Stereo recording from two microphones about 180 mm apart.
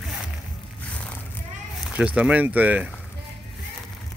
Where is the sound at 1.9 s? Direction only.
5° right (ahead or behind).